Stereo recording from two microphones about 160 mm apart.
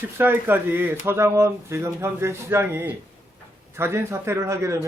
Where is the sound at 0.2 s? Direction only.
15° right (ahead or behind).